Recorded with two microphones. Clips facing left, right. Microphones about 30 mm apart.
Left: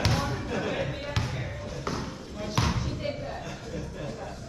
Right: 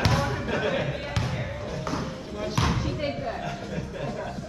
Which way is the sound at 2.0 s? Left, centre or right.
Centre.